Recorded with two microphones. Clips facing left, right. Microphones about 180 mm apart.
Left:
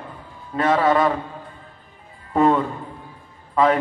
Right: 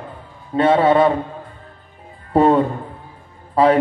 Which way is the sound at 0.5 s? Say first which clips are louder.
Right 4 dB; 30° right (ahead or behind).